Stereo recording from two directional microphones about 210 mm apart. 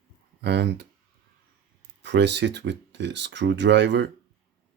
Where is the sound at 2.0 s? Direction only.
55° right (ahead or behind).